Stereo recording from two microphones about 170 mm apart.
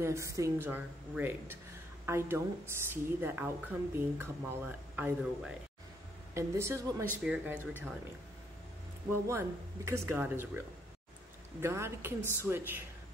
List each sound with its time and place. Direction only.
0.0 s speech: 15° right (ahead or behind)
9.1 s speech: 15° right (ahead or behind)
11.6 s speech: 15° right (ahead or behind)